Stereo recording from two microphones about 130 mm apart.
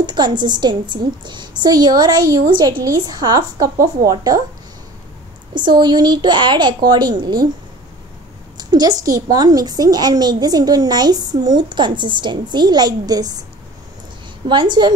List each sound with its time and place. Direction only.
0.0 s a woman's voice: 35° right (ahead or behind)
5.5 s a woman's voice: 35° right (ahead or behind)
8.5 s a woman's voice: 30° right (ahead or behind)
14.5 s a woman's voice: 35° right (ahead or behind)